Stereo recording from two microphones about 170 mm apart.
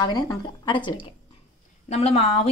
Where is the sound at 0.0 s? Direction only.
25° left (ahead or behind).